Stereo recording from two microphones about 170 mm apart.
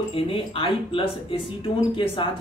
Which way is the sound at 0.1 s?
30° left (ahead or behind).